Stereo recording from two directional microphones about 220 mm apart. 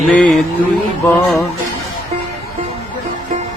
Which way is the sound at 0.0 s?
5° left (ahead or behind).